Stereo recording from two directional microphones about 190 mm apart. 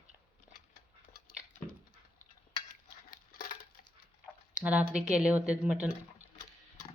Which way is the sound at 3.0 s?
50° left (ahead or behind).